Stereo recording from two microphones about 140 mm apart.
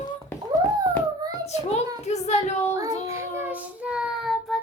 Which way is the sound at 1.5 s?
50° left (ahead or behind).